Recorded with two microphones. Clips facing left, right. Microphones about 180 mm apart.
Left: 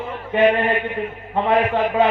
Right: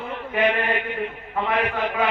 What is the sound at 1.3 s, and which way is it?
Speech, 30° left (ahead or behind).